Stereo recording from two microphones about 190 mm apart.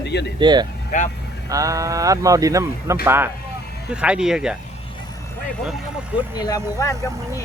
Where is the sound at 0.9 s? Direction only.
40° left (ahead or behind).